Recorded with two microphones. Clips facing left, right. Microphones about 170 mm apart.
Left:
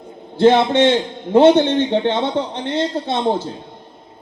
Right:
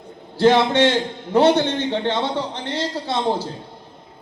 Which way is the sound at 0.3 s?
20° left (ahead or behind).